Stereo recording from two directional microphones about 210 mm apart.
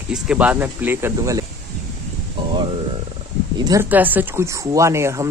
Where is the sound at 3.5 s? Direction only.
20° right (ahead or behind).